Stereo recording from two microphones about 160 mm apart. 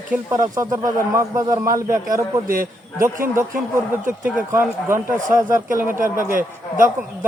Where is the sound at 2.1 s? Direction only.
60° right (ahead or behind).